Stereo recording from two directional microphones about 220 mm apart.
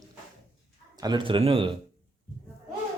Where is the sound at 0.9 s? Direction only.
20° right (ahead or behind).